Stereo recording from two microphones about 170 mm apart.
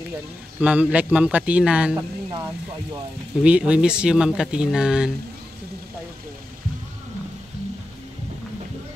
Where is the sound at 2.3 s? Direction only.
20° right (ahead or behind).